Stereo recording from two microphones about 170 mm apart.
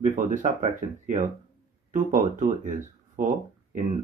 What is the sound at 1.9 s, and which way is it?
Speech, 50° right (ahead or behind).